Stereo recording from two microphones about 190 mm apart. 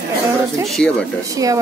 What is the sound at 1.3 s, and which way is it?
Speech, 20° right (ahead or behind).